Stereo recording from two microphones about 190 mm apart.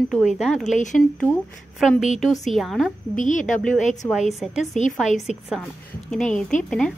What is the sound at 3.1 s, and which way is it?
Speech, 40° left (ahead or behind).